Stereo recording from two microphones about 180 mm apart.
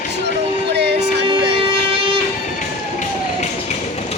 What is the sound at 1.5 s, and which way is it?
Music, 30° right (ahead or behind).